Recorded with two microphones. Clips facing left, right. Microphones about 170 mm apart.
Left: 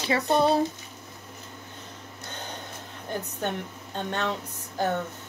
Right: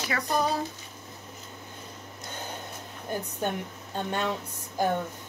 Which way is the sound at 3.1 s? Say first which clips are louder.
Even; 10° right (ahead or behind).